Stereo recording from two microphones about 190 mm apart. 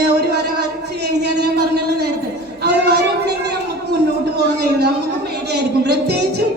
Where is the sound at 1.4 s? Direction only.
60° right (ahead or behind).